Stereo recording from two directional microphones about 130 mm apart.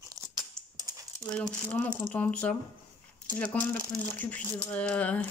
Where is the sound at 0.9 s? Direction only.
30° right (ahead or behind).